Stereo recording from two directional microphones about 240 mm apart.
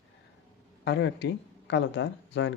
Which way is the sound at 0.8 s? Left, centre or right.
Left.